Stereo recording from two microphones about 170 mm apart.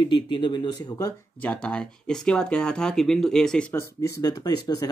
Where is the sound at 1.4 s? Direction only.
5° left (ahead or behind); by 4.9 s 20° left (ahead or behind).